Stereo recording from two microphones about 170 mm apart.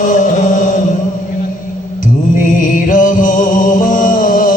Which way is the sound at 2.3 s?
50° left (ahead or behind).